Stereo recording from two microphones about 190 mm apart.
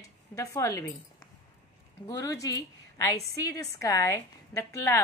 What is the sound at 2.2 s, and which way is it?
A woman's voice, 15° left (ahead or behind).